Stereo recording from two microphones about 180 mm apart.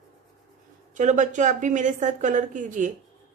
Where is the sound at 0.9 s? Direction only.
45° right (ahead or behind).